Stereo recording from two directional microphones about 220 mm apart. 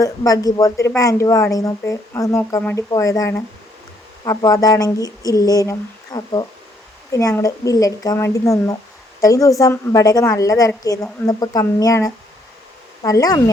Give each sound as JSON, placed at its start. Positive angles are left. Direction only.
{"t": 0.0, "sound": "a woman's voice", "side_deg": 15}